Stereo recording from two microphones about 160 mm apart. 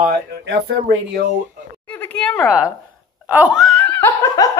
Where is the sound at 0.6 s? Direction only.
85° right.